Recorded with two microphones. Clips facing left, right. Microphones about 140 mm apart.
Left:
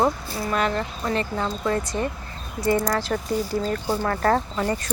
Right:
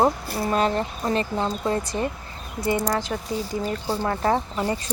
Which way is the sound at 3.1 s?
10° right (ahead or behind).